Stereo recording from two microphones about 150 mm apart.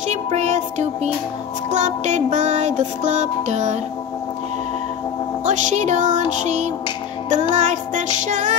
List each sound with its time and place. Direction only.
0.1 s music: 50° right (ahead or behind)
5.4 s music: 55° right (ahead or behind)